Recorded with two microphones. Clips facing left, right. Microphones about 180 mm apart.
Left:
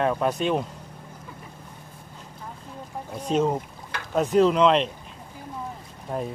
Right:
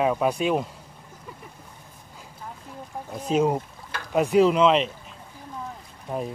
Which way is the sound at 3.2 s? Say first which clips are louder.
Right 1 dB; 5° right (ahead or behind).